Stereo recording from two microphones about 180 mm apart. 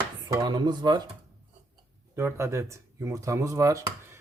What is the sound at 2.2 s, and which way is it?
Speech, 15° right (ahead or behind).